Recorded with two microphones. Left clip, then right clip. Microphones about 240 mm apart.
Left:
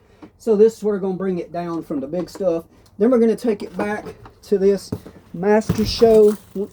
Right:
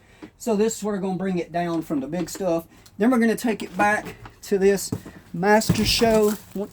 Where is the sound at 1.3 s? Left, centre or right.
Right.